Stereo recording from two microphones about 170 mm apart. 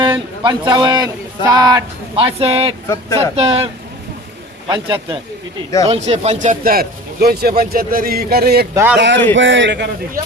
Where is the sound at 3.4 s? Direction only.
35° right (ahead or behind); by 8.7 s 65° right (ahead or behind).